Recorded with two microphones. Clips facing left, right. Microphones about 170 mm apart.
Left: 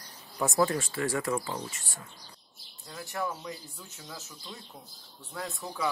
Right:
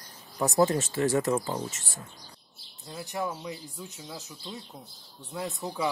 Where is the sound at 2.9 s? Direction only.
20° right (ahead or behind).